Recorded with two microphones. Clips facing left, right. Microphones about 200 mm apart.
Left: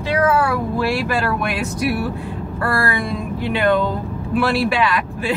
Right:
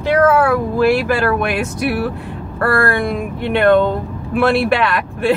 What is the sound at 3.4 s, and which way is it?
Speech, 60° right (ahead or behind).